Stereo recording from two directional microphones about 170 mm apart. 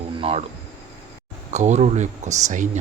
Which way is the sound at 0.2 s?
35° right (ahead or behind).